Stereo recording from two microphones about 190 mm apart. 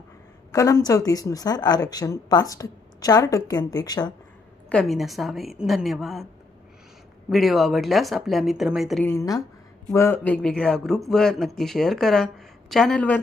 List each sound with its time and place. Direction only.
0.5 s a woman's voice: 15° left (ahead or behind)
4.7 s speech: 5° left (ahead or behind)
7.3 s speech: centre (ahead or behind)
9.0 s speech: 15° left (ahead or behind)